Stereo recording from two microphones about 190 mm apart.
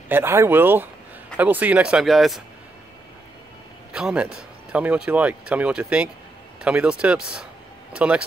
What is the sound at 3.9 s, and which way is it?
Speech, 5° right (ahead or behind).